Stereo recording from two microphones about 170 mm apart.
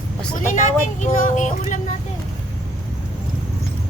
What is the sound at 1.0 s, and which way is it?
Speech, 50° left (ahead or behind).